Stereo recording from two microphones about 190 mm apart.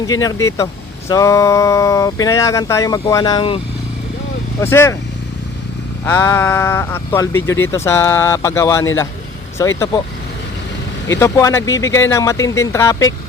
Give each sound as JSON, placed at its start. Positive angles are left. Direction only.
{"t": 0.1, "sound": "speech", "side_deg": 20}
{"t": 4.6, "sound": "speech", "side_deg": 15}
{"t": 6.1, "sound": "speech", "side_deg": 15}
{"t": 11.1, "sound": "speech", "side_deg": 15}